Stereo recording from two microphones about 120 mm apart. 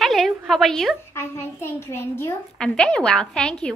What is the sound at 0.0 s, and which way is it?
Speech, centre (ahead or behind).